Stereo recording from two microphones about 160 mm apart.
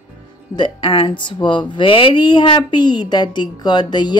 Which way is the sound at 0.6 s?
30° left (ahead or behind).